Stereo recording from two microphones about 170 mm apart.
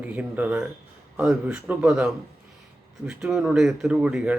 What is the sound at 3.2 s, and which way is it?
Speech, centre (ahead or behind).